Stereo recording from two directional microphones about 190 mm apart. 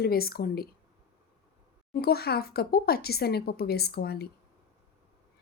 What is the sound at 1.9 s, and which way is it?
Speech, 55° left (ahead or behind).